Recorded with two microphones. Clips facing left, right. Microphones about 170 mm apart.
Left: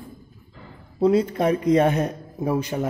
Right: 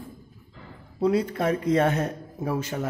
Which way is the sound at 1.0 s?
25° left (ahead or behind).